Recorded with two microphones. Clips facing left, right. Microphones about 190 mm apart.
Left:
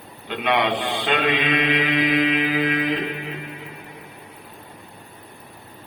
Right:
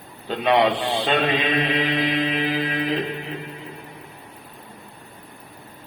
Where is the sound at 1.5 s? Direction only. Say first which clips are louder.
Left 1 dB; 35° right (ahead or behind).